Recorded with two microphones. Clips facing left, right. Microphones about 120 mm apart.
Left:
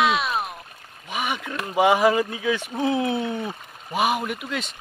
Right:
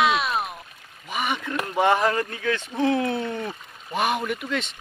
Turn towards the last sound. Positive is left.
turn(degrees=5)  # may be behind; listen again after turning